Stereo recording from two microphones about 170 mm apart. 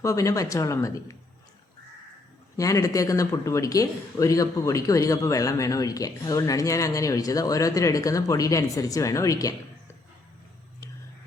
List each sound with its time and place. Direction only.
0.0 s speech: 20° left (ahead or behind)
2.6 s speech: 20° left (ahead or behind)